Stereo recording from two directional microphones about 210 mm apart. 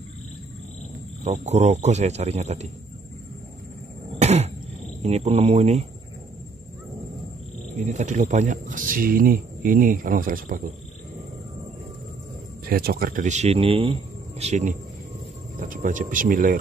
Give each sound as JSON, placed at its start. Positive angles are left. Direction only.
{"t": 1.2, "sound": "speech", "side_deg": -30}
{"t": 4.1, "sound": "cough", "side_deg": -30}
{"t": 5.0, "sound": "speech", "side_deg": -30}
{"t": 7.8, "sound": "speech", "side_deg": -35}
{"t": 12.6, "sound": "speech", "side_deg": -45}